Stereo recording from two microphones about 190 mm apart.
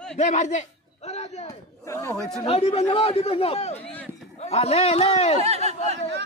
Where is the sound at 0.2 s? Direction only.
35° left (ahead or behind).